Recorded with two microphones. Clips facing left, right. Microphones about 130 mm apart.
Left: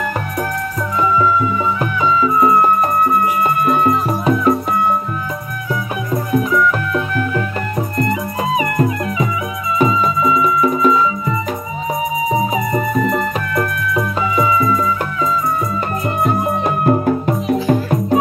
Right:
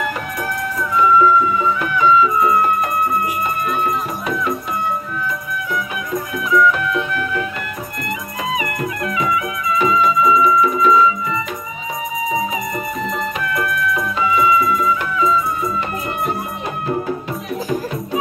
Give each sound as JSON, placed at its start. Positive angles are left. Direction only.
{"t": 2.0, "sound": "music", "side_deg": 30}
{"t": 6.1, "sound": "music", "side_deg": 35}
{"t": 8.5, "sound": "music", "side_deg": 30}
{"t": 12.9, "sound": "music", "side_deg": 50}
{"t": 14.3, "sound": "music", "side_deg": 40}
{"t": 16.6, "sound": "music", "side_deg": 55}